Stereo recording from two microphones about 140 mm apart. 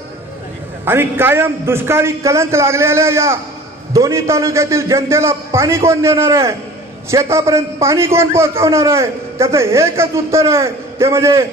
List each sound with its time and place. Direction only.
0.8 s a man's voice: 15° right (ahead or behind)